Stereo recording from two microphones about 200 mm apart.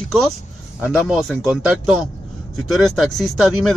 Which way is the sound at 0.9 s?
5° right (ahead or behind).